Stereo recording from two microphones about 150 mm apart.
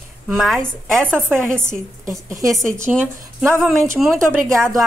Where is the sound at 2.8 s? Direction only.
15° right (ahead or behind).